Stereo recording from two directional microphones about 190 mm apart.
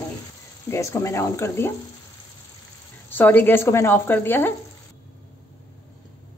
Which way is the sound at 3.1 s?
10° left (ahead or behind).